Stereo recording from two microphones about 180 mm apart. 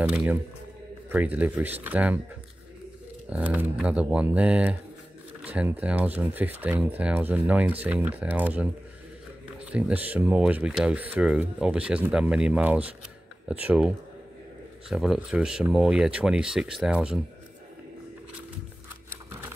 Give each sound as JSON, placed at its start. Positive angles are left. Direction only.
{"t": 0.0, "sound": "speech", "side_deg": -5}
{"t": 3.3, "sound": "speech", "side_deg": -10}
{"t": 9.7, "sound": "speech", "side_deg": -5}